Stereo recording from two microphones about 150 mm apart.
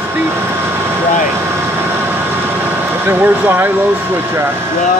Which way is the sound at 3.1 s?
15° right (ahead or behind).